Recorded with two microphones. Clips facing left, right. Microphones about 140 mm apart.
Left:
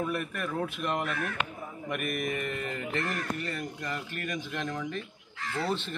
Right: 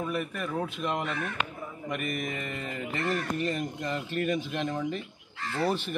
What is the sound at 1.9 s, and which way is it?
Speech, 5° left (ahead or behind).